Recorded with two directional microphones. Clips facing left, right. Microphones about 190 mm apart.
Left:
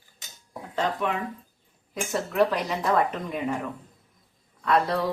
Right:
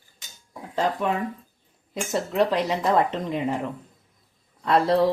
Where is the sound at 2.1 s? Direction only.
20° right (ahead or behind).